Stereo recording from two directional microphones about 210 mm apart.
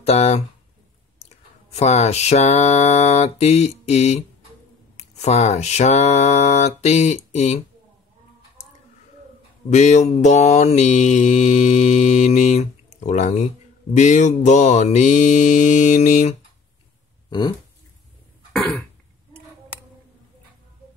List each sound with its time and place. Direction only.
0.0 s speech: 30° left (ahead or behind)
1.2 s a sound: 30° left (ahead or behind)
4.9 s mantra: 30° left (ahead or behind)
9.7 s mantra: 35° left (ahead or behind)
17.3 s speech: 20° left (ahead or behind)
18.5 s cough: centre (ahead or behind)